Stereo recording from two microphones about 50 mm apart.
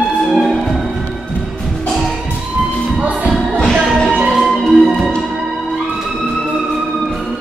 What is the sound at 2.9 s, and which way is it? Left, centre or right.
Music, right.